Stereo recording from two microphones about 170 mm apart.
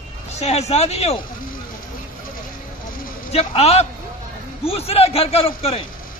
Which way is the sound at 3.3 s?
35° left (ahead or behind).